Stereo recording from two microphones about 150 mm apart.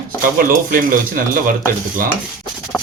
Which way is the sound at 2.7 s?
5° left (ahead or behind).